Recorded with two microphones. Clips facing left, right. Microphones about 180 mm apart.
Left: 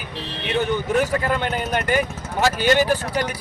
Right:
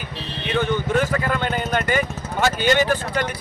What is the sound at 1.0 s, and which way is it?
Speech, 10° left (ahead or behind).